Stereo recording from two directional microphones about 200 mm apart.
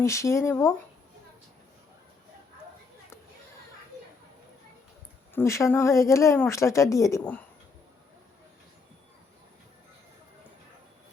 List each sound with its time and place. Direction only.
0.0 s speech: 15° left (ahead or behind)
5.3 s speech: 15° left (ahead or behind)